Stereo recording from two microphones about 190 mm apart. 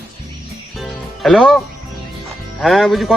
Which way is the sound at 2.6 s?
Centre (ahead or behind).